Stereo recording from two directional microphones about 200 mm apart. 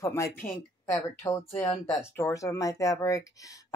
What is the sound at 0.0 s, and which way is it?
Speech, 15° left (ahead or behind).